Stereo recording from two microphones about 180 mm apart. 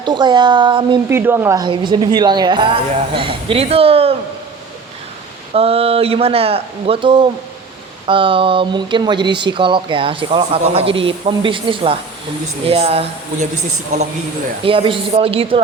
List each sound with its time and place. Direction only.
0.0 s a woman's voice: 25° right (ahead or behind)
1.1 s a woman's voice: 10° right (ahead or behind); by 4.1 s 30° right (ahead or behind)
5.5 s a woman's voice: 35° right (ahead or behind)
14.6 s speech: 30° right (ahead or behind)